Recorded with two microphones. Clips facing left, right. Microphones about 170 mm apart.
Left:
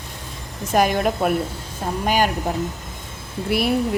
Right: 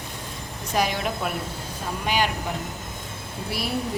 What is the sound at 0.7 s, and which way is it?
Speech, 50° left (ahead or behind).